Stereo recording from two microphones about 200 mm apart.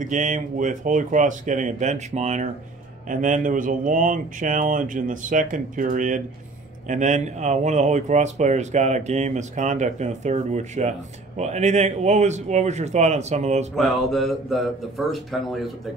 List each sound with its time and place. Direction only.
0.0 s speech: 40° right (ahead or behind)
13.7 s speech: centre (ahead or behind)